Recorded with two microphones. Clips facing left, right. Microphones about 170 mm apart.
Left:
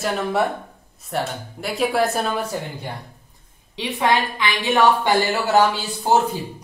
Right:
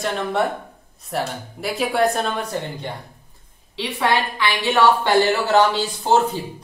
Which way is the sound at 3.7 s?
15° left (ahead or behind).